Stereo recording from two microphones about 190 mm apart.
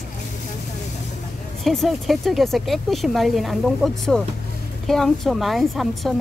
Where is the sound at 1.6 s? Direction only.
Centre (ahead or behind).